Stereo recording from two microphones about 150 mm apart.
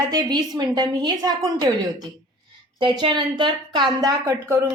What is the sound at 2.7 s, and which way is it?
A woman's voice, 30° right (ahead or behind).